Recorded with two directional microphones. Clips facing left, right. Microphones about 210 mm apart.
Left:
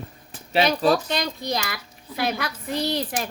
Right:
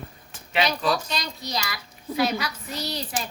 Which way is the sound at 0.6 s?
50° left (ahead or behind).